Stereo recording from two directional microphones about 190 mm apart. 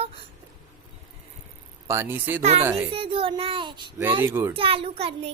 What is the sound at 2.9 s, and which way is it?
Child singing, 30° right (ahead or behind).